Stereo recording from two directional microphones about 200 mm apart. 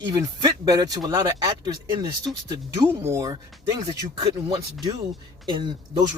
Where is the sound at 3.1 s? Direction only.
20° right (ahead or behind).